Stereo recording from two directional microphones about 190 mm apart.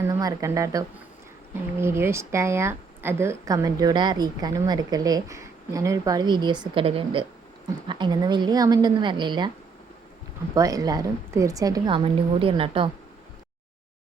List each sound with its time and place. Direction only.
0.1 s a woman's voice: 15° right (ahead or behind)
10.5 s a woman's voice: 20° right (ahead or behind)